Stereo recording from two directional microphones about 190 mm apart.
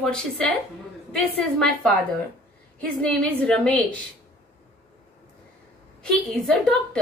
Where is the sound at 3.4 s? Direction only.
5° left (ahead or behind).